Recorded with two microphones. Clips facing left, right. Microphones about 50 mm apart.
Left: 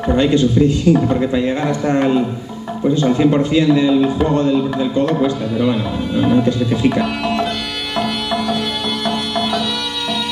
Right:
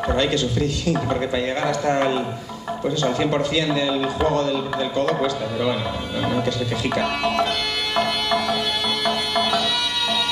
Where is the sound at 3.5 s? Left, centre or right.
Left.